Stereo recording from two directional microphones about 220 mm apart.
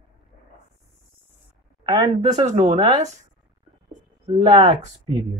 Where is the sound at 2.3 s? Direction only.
30° right (ahead or behind).